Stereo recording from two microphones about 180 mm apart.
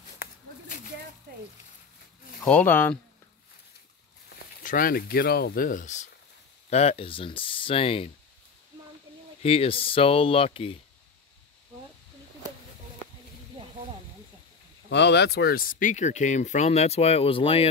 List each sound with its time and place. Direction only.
2.4 s speech: 10° left (ahead or behind)
4.6 s speech: 55° left (ahead or behind); by 8.1 s 30° left (ahead or behind)
9.4 s speech: 30° left (ahead or behind)
14.9 s speech: 75° left (ahead or behind); by 17.6 s 30° left (ahead or behind)